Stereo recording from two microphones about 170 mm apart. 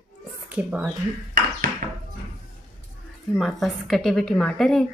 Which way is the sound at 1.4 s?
55° right (ahead or behind).